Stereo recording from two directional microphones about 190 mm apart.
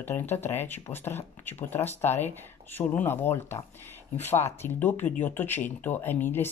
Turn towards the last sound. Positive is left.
turn(degrees=10)  # may be behind; listen again after turning